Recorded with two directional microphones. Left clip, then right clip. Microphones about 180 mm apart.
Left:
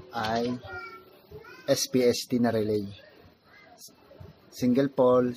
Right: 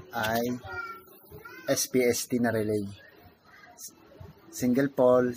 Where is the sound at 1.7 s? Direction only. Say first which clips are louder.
Left 2 dB; 15° left (ahead or behind).